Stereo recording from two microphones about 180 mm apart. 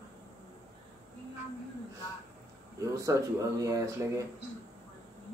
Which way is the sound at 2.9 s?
20° right (ahead or behind).